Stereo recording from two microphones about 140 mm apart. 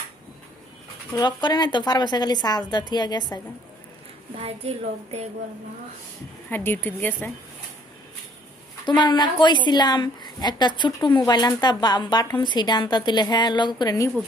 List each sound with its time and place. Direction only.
1.1 s speech: 30° left (ahead or behind)
4.4 s a woman's voice: 45° right (ahead or behind)
6.5 s a woman's voice: 15° left (ahead or behind)
8.8 s speech: 35° left (ahead or behind)